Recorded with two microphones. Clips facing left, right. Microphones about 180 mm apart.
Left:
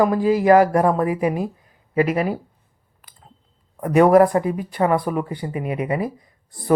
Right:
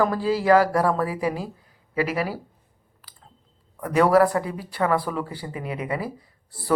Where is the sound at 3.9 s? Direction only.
20° left (ahead or behind).